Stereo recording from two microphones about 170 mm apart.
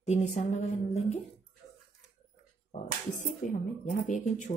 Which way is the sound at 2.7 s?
50° left (ahead or behind).